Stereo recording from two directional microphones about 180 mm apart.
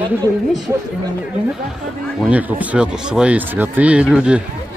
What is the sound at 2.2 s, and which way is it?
Speech, 10° right (ahead or behind).